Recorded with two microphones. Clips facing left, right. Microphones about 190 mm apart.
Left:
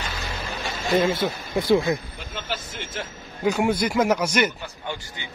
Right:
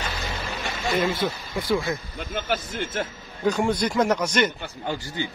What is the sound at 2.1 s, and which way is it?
Speech, 55° right (ahead or behind).